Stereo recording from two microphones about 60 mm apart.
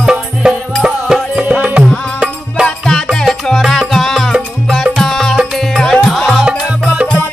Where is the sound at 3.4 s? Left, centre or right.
Centre.